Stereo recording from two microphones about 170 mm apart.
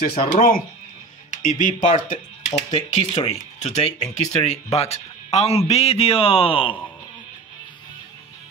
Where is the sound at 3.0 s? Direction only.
35° left (ahead or behind).